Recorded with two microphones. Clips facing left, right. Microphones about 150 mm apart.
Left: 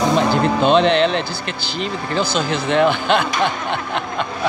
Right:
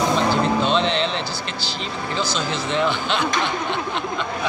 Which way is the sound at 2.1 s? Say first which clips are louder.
Left 5 dB; 55° left (ahead or behind).